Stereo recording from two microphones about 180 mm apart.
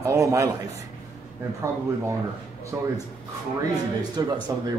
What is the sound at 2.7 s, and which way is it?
Speech, 15° right (ahead or behind).